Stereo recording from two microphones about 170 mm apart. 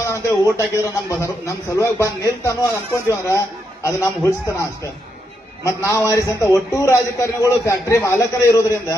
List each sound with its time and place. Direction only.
0.1 s a sound: 15° left (ahead or behind)
1.1 s a man's voice: 20° left (ahead or behind)
5.6 s a man's voice: 15° left (ahead or behind)